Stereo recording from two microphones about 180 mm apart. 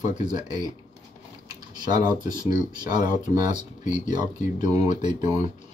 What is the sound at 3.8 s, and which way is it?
Speech, 45° left (ahead or behind).